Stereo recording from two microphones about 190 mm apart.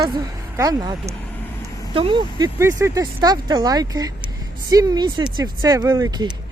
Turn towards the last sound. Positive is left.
turn(degrees=-20)  # may be behind; listen again after turning